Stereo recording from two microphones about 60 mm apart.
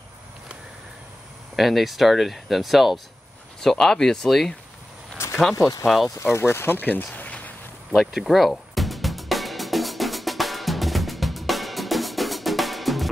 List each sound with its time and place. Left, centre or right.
1.6 s speech: centre
3.6 s speech: centre
5.2 s a sound: left
5.9 s speech: centre
6.3 s speech: left
7.9 s music: centre